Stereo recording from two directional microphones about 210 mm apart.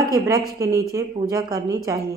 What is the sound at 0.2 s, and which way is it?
A woman's voice, 15° right (ahead or behind).